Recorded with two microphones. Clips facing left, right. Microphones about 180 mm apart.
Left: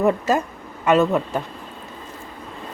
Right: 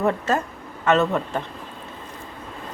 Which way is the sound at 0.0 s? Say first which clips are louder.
Left 3 dB; 10° left (ahead or behind).